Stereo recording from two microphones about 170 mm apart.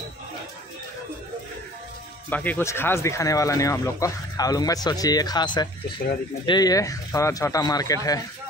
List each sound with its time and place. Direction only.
2.2 s speech: 10° left (ahead or behind)